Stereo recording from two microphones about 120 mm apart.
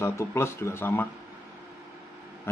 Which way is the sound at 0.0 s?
25° left (ahead or behind).